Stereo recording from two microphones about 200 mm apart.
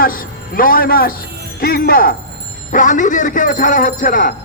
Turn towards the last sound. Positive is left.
turn(degrees=40)  # may be behind; listen again after turning